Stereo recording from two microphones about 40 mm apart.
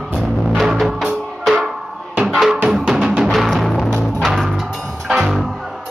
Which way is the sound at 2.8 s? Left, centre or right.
Right.